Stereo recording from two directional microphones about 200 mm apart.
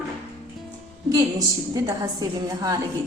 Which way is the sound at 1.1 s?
20° right (ahead or behind).